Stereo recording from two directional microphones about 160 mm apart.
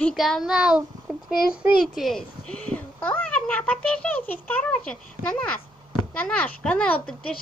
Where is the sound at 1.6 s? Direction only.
5° right (ahead or behind).